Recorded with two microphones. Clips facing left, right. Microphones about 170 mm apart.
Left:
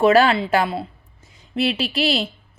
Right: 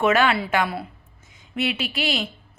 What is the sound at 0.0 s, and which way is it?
A woman's voice, 35° left (ahead or behind).